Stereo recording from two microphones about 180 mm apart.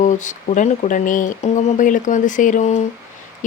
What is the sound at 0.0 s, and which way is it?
A woman's voice, 45° left (ahead or behind).